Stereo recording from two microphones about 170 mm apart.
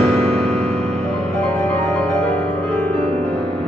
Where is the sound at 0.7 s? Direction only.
40° right (ahead or behind).